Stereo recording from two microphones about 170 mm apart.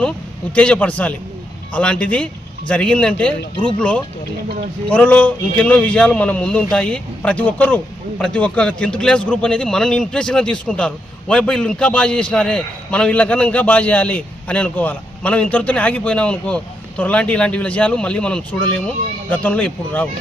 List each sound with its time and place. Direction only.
0.5 s speech: 5° left (ahead or behind)